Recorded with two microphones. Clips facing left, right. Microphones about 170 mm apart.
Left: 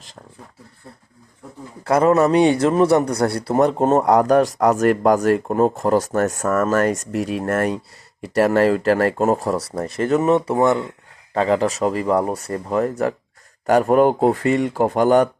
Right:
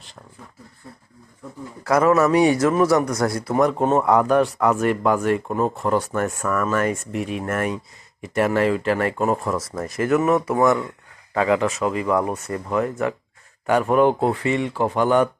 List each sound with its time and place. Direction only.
1.8 s a man's voice: 30° left (ahead or behind)